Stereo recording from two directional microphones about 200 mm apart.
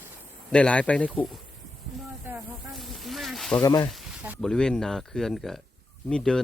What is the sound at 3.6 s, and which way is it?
Speech, 20° left (ahead or behind).